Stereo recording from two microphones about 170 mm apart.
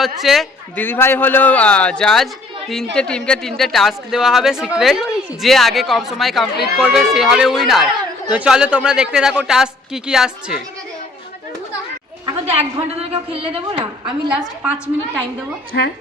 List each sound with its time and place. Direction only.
0.0 s speech: centre (ahead or behind)
0.8 s speech: 15° left (ahead or behind); by 10.6 s 5° right (ahead or behind)
12.5 s a woman's voice: 35° right (ahead or behind)
14.3 s a woman's voice: 5° right (ahead or behind)
15.7 s a woman's voice: 75° left (ahead or behind)